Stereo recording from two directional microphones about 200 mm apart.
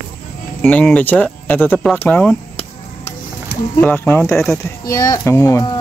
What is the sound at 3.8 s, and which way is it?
Speech, 10° left (ahead or behind).